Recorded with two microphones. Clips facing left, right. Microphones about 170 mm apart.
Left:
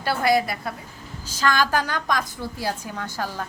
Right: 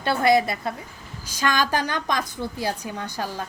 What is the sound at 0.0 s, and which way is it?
A woman's voice, 25° right (ahead or behind).